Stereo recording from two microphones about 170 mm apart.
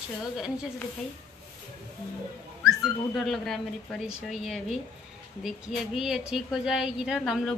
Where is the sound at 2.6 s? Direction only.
Centre (ahead or behind).